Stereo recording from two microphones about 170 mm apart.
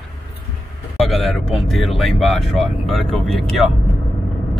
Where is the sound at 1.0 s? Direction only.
Centre (ahead or behind).